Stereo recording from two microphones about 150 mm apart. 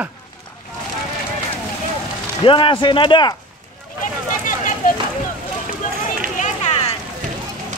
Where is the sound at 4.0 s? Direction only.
60° left (ahead or behind).